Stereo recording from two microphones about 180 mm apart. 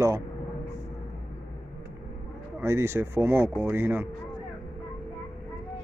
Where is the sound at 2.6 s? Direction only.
15° right (ahead or behind).